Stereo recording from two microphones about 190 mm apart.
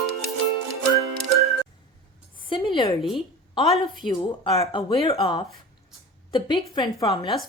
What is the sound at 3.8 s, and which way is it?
A woman's voice, 25° left (ahead or behind).